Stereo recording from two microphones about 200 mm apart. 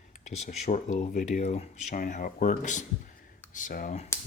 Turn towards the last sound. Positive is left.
turn(degrees=40)  # may be behind; listen again after turning